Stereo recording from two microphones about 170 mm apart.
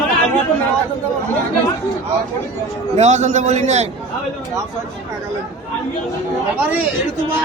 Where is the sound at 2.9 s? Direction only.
40° right (ahead or behind).